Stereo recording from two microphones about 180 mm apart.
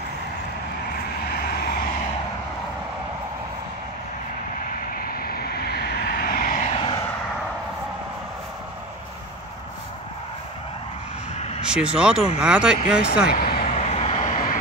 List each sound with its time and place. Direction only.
1.3 s vehicle: 60° left (ahead or behind)
4.9 s vehicle: 55° left (ahead or behind)
6.7 s vehicle: 30° left (ahead or behind)
11.3 s vehicle: 35° left (ahead or behind)
11.6 s speech: 5° right (ahead or behind)
13.3 s speech: 60° left (ahead or behind)
13.7 s vehicle: 35° left (ahead or behind)